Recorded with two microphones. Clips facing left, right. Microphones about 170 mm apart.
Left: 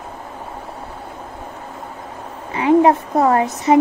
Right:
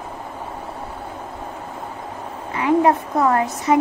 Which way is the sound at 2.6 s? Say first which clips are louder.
Left 4 dB; 25° left (ahead or behind).